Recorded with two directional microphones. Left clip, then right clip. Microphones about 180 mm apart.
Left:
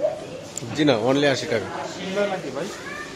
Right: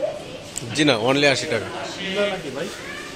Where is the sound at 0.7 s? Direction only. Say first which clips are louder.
Right 1 dB; 5° left (ahead or behind).